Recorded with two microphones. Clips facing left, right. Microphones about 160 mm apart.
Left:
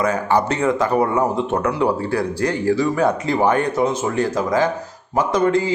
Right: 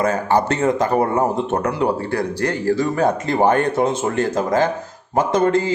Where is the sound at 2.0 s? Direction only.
50° right (ahead or behind).